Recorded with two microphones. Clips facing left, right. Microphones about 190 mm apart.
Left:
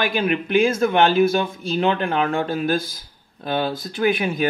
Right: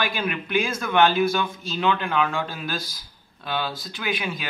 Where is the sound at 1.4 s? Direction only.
40° left (ahead or behind).